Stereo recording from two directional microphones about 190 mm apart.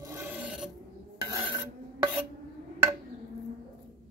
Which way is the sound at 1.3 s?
20° right (ahead or behind).